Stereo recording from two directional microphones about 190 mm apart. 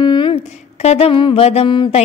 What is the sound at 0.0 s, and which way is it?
Music, 25° left (ahead or behind).